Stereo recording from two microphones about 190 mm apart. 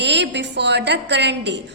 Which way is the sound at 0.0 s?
65° right (ahead or behind).